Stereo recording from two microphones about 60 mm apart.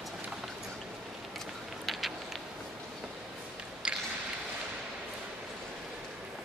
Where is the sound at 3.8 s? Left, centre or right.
Centre.